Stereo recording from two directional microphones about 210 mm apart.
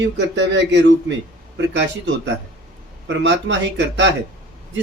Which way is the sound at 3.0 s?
55° right (ahead or behind).